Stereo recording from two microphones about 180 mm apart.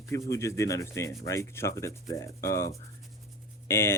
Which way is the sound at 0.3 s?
15° left (ahead or behind).